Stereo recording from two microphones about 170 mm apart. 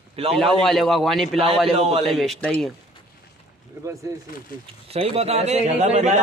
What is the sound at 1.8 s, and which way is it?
Speech, 35° right (ahead or behind).